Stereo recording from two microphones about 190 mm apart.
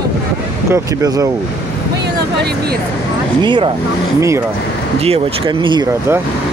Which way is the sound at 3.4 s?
25° right (ahead or behind).